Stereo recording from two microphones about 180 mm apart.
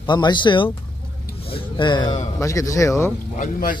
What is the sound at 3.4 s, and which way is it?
Speech, 45° left (ahead or behind).